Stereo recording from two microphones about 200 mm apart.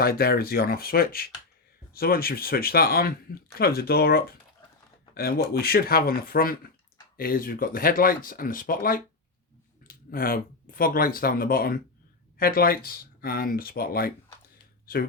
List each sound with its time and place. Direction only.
0.0 s speech: 50° left (ahead or behind)